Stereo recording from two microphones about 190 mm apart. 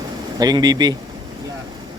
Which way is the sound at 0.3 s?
20° right (ahead or behind).